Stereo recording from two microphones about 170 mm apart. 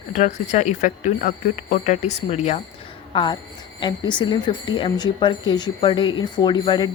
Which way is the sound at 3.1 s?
30° left (ahead or behind).